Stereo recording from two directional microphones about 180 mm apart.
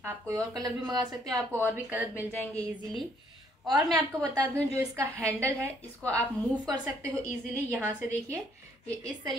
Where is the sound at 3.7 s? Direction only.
25° right (ahead or behind).